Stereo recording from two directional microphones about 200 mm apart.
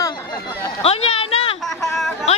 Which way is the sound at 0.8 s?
30° left (ahead or behind).